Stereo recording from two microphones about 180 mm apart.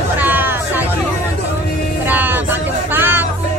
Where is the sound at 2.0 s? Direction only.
10° right (ahead or behind).